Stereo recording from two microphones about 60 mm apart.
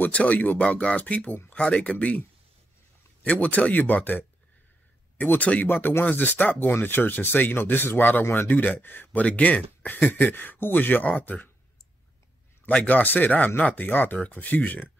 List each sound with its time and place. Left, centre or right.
0.0 s speech: left
3.3 s speech: left
12.8 s speech: left